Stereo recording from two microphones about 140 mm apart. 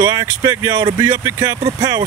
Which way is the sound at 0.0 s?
25° right (ahead or behind).